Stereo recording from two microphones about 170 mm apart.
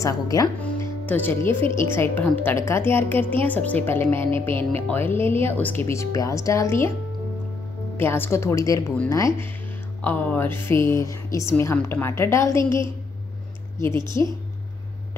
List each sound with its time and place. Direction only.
0.0 s speech: 20° left (ahead or behind)
8.0 s speech: 15° left (ahead or behind)
14.2 s speech: 15° left (ahead or behind)